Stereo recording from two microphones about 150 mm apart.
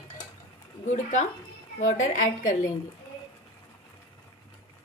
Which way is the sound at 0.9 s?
55° left (ahead or behind).